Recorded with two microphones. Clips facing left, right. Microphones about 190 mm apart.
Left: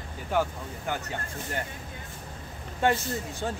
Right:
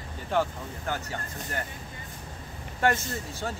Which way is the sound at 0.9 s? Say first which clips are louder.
Even; 15° left (ahead or behind).